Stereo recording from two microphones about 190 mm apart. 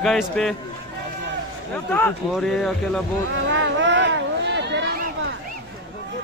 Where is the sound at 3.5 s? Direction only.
70° right (ahead or behind).